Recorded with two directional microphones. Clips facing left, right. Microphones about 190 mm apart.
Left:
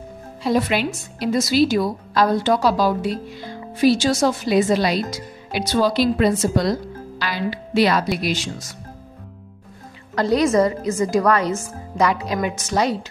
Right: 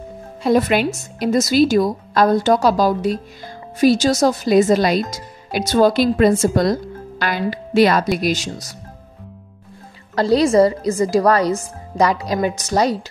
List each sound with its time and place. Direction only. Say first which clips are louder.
0.4 s a woman's voice: right 4 dB; 50° right (ahead or behind)
10.1 s a woman's voice: right 3 dB; 30° right (ahead or behind)